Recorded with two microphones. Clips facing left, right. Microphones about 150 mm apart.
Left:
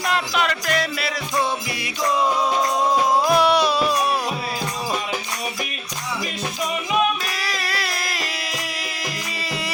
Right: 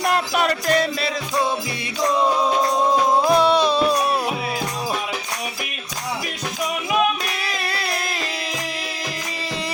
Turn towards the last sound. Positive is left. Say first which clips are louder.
# right 1 dB
turn(degrees=-25)  # may be behind; listen again after turning